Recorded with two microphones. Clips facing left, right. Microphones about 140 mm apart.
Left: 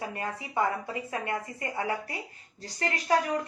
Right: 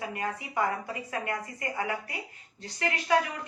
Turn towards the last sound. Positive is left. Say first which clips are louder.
# left 1 dB
turn(degrees=35)  # may be behind; listen again after turning